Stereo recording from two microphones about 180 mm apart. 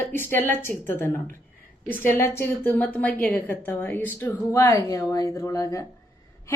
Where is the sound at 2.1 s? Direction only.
15° left (ahead or behind).